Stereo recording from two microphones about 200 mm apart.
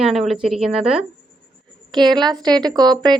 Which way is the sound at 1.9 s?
20° right (ahead or behind).